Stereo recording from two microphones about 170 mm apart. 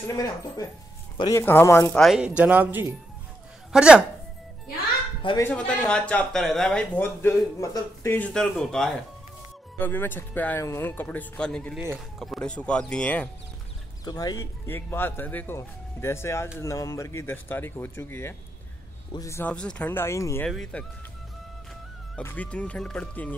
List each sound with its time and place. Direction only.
0.0 s speech: 20° left (ahead or behind)
2.0 s speech: centre (ahead or behind)
5.4 s speech: 10° left (ahead or behind)
14.0 s speech: 20° left (ahead or behind)
20.4 s speech: 5° left (ahead or behind)
22.1 s speech: 10° left (ahead or behind)